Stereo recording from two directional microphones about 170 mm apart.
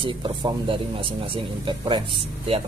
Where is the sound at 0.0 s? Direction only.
30° right (ahead or behind).